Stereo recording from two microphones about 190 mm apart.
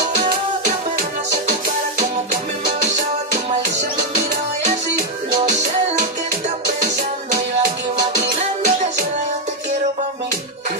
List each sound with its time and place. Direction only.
8.4 s music: 40° right (ahead or behind)